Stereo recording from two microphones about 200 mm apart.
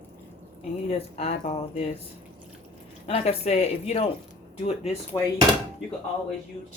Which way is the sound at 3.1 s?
30° left (ahead or behind).